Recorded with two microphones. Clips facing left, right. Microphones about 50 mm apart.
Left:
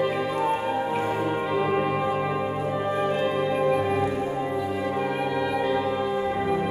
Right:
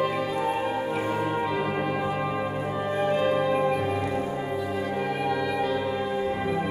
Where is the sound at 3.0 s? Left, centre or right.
Centre.